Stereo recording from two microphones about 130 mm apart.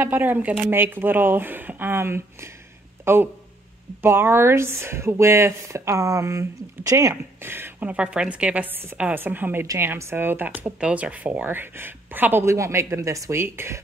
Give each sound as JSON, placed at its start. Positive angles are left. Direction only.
{"t": 0.0, "sound": "speech", "side_deg": -15}